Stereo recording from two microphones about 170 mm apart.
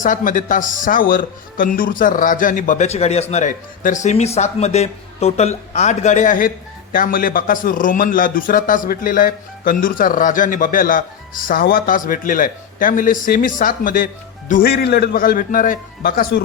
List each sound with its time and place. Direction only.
0.0 s speech: 50° left (ahead or behind)
14.7 s a man's voice: 70° left (ahead or behind)